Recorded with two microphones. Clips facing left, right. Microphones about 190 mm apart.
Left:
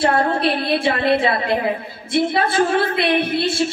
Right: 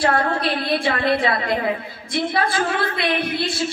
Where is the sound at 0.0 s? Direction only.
25° left (ahead or behind).